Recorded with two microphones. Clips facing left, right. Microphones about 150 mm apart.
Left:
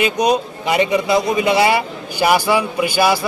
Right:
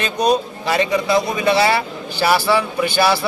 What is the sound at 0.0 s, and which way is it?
A man's voice, 15° left (ahead or behind).